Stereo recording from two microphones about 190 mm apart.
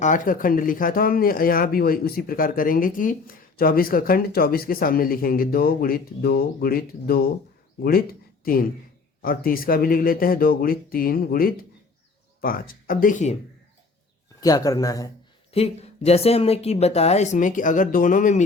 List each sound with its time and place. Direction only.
0.0 s speech: 45° left (ahead or behind)
9.2 s speech: 50° left (ahead or behind)
14.4 s speech: 20° left (ahead or behind)
15.5 s speech: 35° left (ahead or behind)